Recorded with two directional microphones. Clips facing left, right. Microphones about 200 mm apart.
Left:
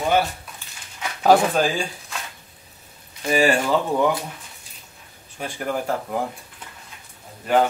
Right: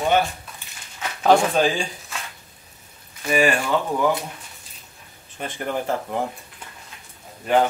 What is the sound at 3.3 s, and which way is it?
Speech, 30° left (ahead or behind).